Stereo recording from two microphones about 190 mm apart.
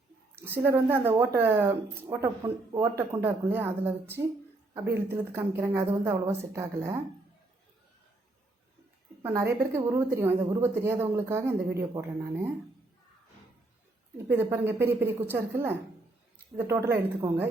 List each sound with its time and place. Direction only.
0.3 s a woman's voice: 10° right (ahead or behind)
9.2 s a woman's voice: 15° right (ahead or behind)
14.3 s a woman's voice: 10° right (ahead or behind)